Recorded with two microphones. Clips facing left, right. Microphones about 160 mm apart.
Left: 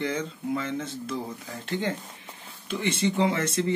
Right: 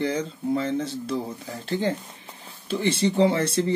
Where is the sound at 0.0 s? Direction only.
35° right (ahead or behind).